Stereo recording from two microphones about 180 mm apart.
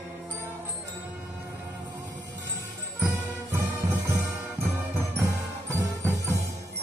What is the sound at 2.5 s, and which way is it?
Music, 15° right (ahead or behind).